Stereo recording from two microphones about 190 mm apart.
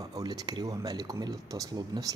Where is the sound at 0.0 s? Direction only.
20° right (ahead or behind).